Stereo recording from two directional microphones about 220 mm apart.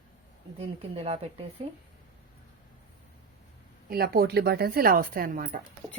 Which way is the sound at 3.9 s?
45° right (ahead or behind).